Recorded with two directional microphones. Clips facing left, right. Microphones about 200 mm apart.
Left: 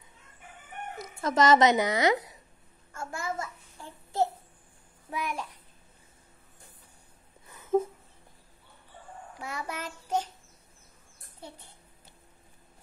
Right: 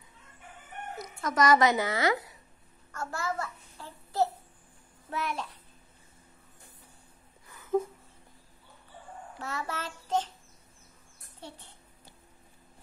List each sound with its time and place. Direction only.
1.2 s speech: 25° left (ahead or behind)
2.9 s child singing: 25° left (ahead or behind)
5.1 s a child's voice: 10° left (ahead or behind)
7.4 s a sound: 20° left (ahead or behind)
9.4 s a child's voice: 15° left (ahead or behind)
11.4 s a child's voice: 10° left (ahead or behind)